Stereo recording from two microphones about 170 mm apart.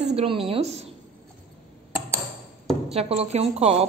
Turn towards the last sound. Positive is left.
turn(degrees=-35)  # may be behind; listen again after turning